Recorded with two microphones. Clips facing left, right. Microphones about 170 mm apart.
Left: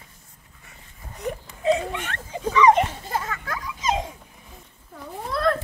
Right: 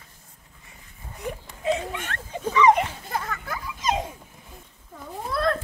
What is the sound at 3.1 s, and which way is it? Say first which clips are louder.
Children playing: left 2 dB; centre (ahead or behind).